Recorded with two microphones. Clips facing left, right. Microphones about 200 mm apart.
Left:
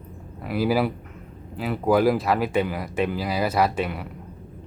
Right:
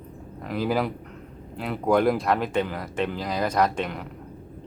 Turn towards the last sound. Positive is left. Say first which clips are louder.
# left 1 dB
turn(degrees=5)  # may be behind; listen again after turning